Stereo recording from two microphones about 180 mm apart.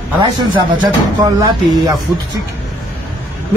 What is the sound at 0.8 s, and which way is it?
Speech, 20° right (ahead or behind).